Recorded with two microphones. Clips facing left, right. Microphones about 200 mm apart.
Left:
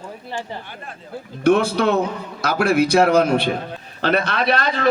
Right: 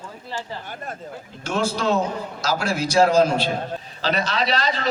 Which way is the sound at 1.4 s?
60° left (ahead or behind).